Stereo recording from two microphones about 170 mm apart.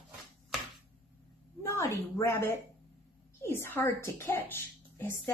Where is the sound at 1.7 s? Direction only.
15° left (ahead or behind).